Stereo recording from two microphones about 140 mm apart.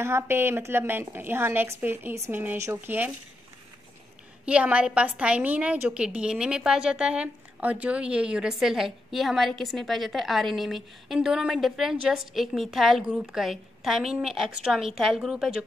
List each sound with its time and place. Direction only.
0.0 s a woman's voice: 15° right (ahead or behind)
4.5 s a woman's voice: 10° right (ahead or behind)